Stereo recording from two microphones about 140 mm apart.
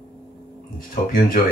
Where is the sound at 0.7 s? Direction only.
80° left.